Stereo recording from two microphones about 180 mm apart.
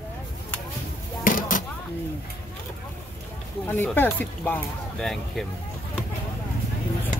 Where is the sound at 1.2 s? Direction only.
50° left (ahead or behind).